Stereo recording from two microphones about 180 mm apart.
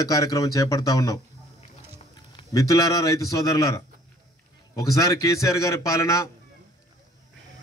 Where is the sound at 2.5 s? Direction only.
20° left (ahead or behind).